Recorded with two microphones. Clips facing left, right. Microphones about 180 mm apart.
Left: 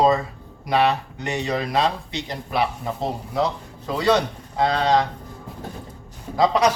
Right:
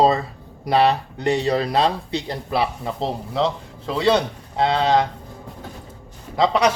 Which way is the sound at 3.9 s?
25° right (ahead or behind).